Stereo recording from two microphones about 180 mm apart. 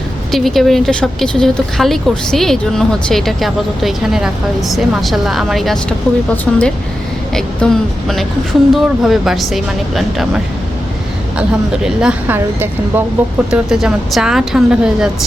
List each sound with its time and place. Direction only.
0.3 s a woman's voice: centre (ahead or behind)